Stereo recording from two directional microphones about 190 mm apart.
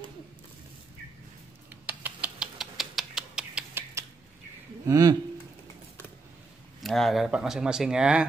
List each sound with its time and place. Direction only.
1.7 s a sound: 10° right (ahead or behind)
4.8 s speech: 20° right (ahead or behind)
6.8 s speech: centre (ahead or behind)